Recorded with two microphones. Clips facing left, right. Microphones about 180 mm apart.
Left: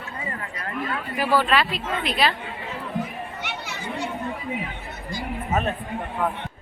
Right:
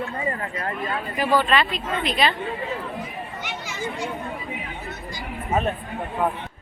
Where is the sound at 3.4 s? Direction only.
65° left (ahead or behind).